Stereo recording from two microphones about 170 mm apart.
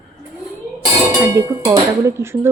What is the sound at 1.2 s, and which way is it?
Speech, 15° right (ahead or behind).